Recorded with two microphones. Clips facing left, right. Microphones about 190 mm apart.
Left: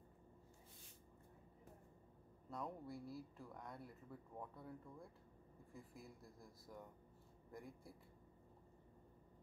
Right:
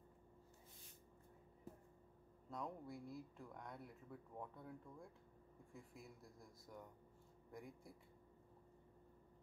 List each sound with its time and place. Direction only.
2.5 s speech: centre (ahead or behind)